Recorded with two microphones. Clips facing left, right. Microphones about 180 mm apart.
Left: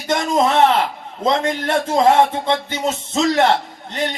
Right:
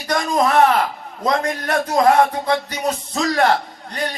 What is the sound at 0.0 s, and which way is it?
A man's voice, 25° left (ahead or behind).